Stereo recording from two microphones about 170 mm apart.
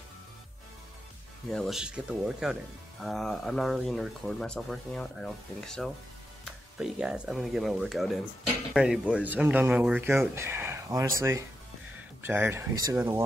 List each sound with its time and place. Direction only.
1.5 s speech: centre (ahead or behind); by 13.2 s 15° right (ahead or behind)